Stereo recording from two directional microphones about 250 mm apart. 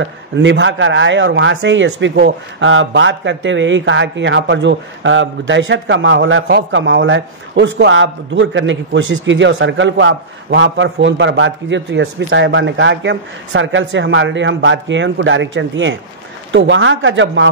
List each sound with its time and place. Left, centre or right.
0.0 s a man's voice: right